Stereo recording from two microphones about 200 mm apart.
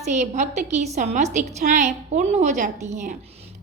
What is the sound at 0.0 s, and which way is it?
A woman's voice, 35° right (ahead or behind).